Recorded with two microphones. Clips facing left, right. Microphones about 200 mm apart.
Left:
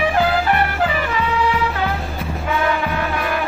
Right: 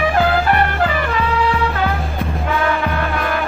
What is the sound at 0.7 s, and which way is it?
Music, 10° left (ahead or behind).